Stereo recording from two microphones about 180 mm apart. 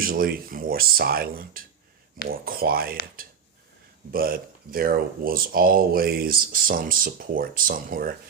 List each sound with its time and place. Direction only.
0.0 s speech: 55° right (ahead or behind)
4.1 s speech: 55° right (ahead or behind)